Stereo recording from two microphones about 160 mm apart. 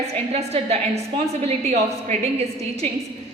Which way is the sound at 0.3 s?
40° right (ahead or behind).